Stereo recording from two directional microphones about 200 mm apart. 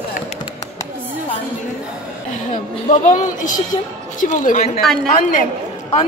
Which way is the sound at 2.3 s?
40° left (ahead or behind).